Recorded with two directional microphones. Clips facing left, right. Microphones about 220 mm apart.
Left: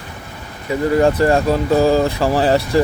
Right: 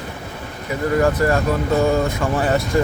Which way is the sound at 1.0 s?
30° left (ahead or behind).